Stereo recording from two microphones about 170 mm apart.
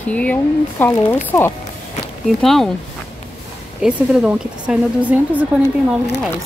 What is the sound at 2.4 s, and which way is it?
Speech, centre (ahead or behind).